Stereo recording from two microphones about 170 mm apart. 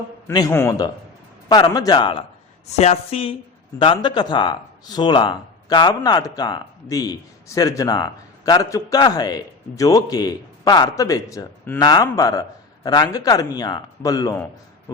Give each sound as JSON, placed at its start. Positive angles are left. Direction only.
{"t": 0.3, "sound": "speech", "side_deg": 15}
{"t": 2.7, "sound": "speech", "side_deg": 40}